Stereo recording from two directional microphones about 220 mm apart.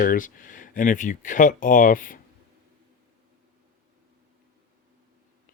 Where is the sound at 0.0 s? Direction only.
40° left (ahead or behind).